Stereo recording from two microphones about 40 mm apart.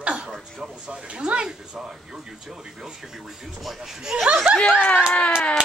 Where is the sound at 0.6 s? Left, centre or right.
Right.